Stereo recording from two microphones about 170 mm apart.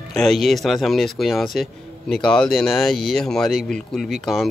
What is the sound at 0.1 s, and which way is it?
Speech, centre (ahead or behind).